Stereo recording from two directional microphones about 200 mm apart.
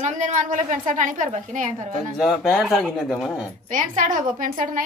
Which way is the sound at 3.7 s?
40° right (ahead or behind).